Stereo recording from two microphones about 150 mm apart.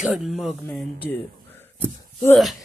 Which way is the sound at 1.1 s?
15° left (ahead or behind).